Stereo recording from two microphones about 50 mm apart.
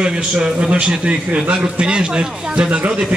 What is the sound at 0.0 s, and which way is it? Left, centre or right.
A man's voice, centre.